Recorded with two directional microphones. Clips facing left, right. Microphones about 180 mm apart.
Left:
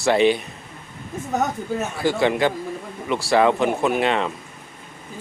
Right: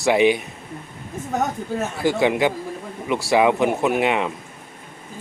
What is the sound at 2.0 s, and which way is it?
Speech, 15° right (ahead or behind).